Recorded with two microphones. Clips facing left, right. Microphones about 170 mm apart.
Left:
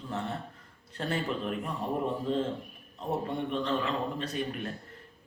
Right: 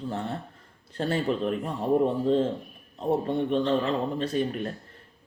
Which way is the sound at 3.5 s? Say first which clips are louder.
Right 6 dB; 35° right (ahead or behind).